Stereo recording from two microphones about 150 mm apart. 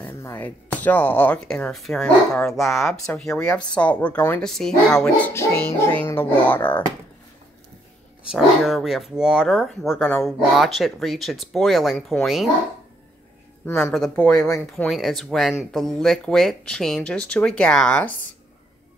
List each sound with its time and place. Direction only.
0.0 s speech: 15° left (ahead or behind)
5.3 s speech: 15° left (ahead or behind)
8.2 s speech: 5° right (ahead or behind)
13.7 s speech: 15° left (ahead or behind)
14.9 s speech: centre (ahead or behind)